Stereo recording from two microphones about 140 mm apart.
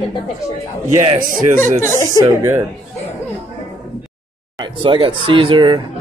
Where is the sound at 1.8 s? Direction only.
20° left (ahead or behind).